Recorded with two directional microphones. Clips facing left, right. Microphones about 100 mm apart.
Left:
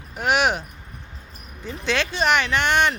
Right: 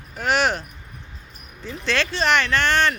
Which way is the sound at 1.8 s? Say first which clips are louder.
Even; 10° left (ahead or behind).